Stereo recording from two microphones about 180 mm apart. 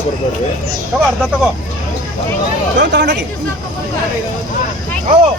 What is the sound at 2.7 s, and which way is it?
Speech, 75° right (ahead or behind).